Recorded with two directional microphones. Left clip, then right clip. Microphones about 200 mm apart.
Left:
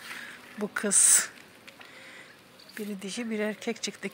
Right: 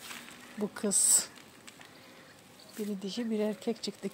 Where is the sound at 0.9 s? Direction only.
10° left (ahead or behind).